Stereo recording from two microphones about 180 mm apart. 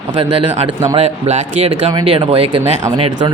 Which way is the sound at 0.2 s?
35° right (ahead or behind).